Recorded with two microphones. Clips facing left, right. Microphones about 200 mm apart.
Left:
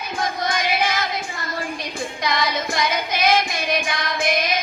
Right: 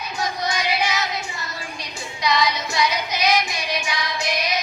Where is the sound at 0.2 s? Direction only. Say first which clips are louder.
Left 1 dB; 55° left (ahead or behind).